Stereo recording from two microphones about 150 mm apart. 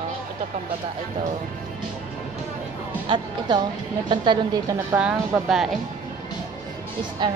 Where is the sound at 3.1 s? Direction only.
30° right (ahead or behind).